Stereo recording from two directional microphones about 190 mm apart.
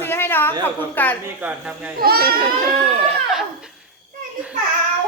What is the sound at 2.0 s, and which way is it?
Speech, 55° right (ahead or behind).